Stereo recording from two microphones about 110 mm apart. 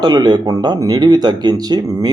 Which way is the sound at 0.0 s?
40° right (ahead or behind).